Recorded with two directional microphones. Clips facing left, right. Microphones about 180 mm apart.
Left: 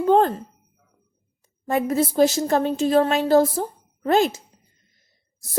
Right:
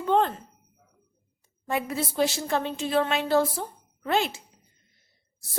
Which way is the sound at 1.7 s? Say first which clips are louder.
Left 8 dB; 45° left (ahead or behind).